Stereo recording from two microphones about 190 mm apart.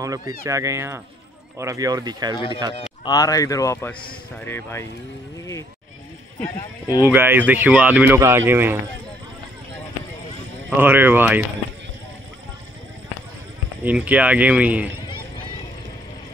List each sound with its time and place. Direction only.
0.0 s speech: 15° right (ahead or behind)
2.3 s speech: 25° left (ahead or behind)
7.0 s speech: 10° right (ahead or behind)
10.8 s speech: 10° right (ahead or behind)
13.8 s speech: 10° right (ahead or behind)